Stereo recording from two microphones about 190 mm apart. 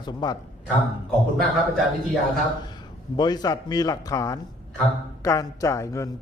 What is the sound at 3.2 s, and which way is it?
Speech, 20° left (ahead or behind).